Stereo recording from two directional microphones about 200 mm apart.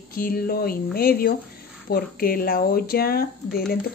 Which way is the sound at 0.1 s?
45° left (ahead or behind).